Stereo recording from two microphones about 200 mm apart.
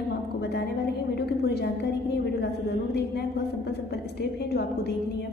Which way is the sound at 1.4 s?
55° left (ahead or behind).